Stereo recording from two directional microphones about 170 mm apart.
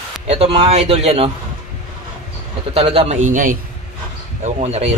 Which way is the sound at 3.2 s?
50° right (ahead or behind).